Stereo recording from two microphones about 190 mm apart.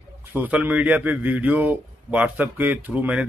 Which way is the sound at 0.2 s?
10° right (ahead or behind).